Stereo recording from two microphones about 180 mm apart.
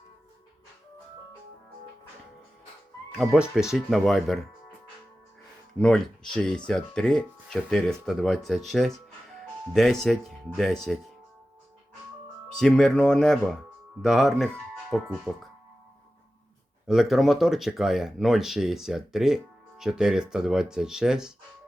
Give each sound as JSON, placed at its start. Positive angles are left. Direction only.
{"t": 3.1, "sound": "speech", "side_deg": -5}
{"t": 5.8, "sound": "speech", "side_deg": 5}
{"t": 12.5, "sound": "speech", "side_deg": 5}
{"t": 16.8, "sound": "speech", "side_deg": 0}